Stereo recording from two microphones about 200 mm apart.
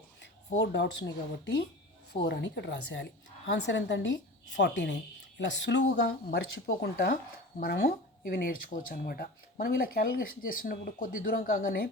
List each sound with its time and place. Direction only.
0.6 s a woman's voice: 55° left (ahead or behind)
2.1 s a woman's voice: 55° left (ahead or behind)
6.9 s speech: 45° left (ahead or behind)